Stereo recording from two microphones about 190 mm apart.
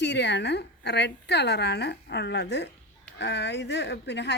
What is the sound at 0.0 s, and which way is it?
A woman's voice, 65° left (ahead or behind).